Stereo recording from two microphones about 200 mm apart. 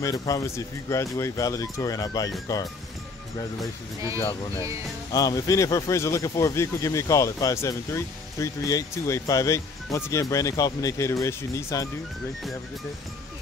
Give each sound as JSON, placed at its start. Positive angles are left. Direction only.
{"t": 0.0, "sound": "speech", "side_deg": 15}
{"t": 5.1, "sound": "speech", "side_deg": 15}